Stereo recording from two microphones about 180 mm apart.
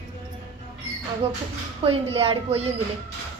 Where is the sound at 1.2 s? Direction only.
35° right (ahead or behind).